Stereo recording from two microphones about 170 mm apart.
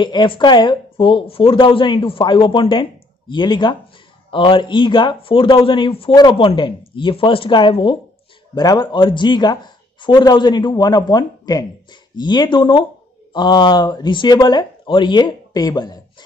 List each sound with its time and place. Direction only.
0.0 s speech: 25° left (ahead or behind)